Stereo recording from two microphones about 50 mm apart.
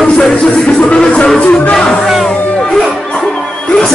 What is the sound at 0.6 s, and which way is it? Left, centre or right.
Speech, left.